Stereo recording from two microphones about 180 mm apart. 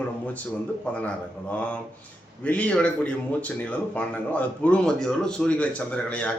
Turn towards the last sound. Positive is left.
turn(degrees=5)  # may be behind; listen again after turning